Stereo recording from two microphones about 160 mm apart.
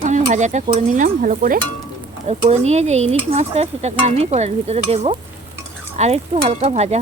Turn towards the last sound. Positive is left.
turn(degrees=-40)  # may be behind; listen again after turning